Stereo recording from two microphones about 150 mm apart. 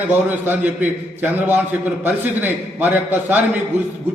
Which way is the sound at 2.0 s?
10° right (ahead or behind).